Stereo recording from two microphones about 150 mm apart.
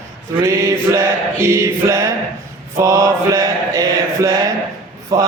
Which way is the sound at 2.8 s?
20° right (ahead or behind).